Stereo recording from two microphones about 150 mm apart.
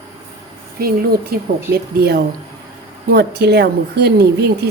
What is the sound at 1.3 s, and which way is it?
A woman's voice, 80° right.